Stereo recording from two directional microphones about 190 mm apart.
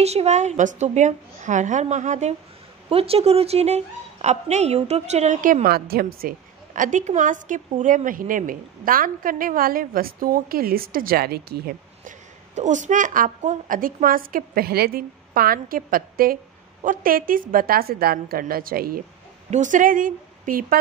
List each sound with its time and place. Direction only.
0.0 s a woman's voice: 35° right (ahead or behind); by 12.1 s 55° right (ahead or behind)
12.5 s a woman's voice: 40° right (ahead or behind)